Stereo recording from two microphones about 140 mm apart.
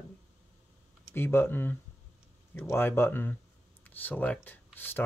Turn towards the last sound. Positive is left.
turn(degrees=15)  # may be behind; listen again after turning